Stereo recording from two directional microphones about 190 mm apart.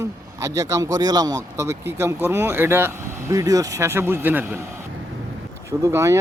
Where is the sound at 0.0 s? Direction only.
15° right (ahead or behind).